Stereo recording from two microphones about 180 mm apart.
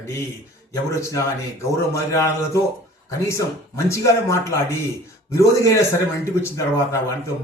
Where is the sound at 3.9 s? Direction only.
15° left (ahead or behind).